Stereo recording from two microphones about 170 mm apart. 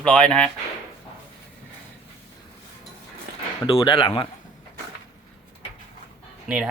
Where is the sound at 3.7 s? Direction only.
30° left (ahead or behind).